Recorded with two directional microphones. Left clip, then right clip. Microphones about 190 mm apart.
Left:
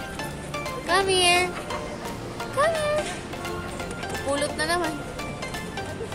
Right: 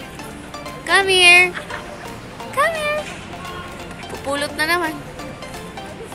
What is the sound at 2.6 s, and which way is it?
Music, 20° right (ahead or behind).